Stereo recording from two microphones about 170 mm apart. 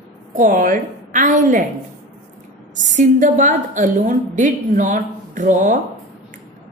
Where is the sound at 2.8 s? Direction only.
45° right (ahead or behind).